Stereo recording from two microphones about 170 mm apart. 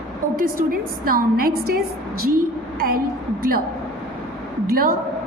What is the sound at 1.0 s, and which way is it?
A woman's voice, 60° right (ahead or behind).